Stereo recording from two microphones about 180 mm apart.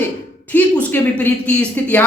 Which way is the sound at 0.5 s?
10° left (ahead or behind).